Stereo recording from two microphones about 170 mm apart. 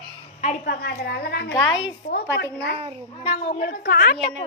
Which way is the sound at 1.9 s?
80° left.